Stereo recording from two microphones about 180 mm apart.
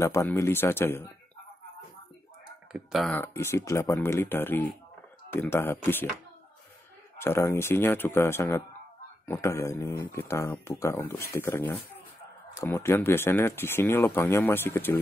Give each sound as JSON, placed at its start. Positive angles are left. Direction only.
{"t": 0.0, "sound": "speech", "side_deg": 15}
{"t": 2.7, "sound": "speech", "side_deg": 0}
{"t": 3.2, "sound": "speech", "side_deg": 15}
{"t": 7.2, "sound": "speech", "side_deg": 15}